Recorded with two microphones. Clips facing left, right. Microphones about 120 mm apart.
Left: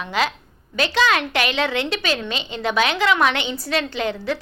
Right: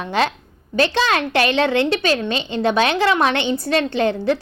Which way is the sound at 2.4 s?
30° right (ahead or behind).